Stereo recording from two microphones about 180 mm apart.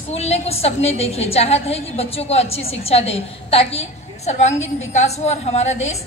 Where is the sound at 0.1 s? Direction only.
35° left (ahead or behind).